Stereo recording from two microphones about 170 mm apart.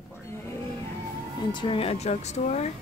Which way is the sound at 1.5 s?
30° left (ahead or behind).